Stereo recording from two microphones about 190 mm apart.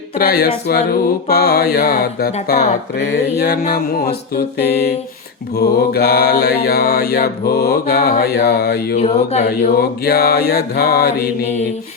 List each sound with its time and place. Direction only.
0.2 s speech: 55° left (ahead or behind)
9.0 s speech: 35° left (ahead or behind)
9.7 s speech: 55° left (ahead or behind)